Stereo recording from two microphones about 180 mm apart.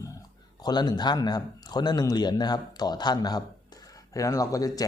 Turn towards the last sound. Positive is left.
turn(degrees=20)  # may be behind; listen again after turning